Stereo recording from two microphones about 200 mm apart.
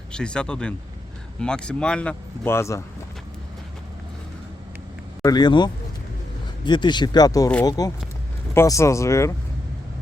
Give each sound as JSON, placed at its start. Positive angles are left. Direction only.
{"t": 0.1, "sound": "speech", "side_deg": 5}
{"t": 5.2, "sound": "speech", "side_deg": 20}